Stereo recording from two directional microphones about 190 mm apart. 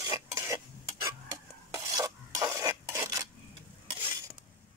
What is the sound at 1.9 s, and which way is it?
Stir, 20° right (ahead or behind).